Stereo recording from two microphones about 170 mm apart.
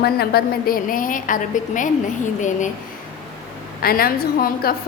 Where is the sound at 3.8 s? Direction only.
60° left (ahead or behind).